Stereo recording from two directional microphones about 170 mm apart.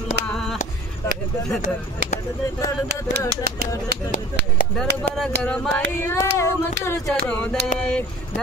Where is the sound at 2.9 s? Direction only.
80° right.